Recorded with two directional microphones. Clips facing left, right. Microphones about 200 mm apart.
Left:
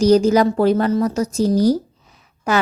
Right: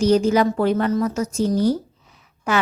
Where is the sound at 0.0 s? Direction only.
40° left (ahead or behind).